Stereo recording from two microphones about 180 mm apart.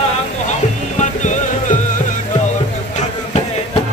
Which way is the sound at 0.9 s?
40° left (ahead or behind).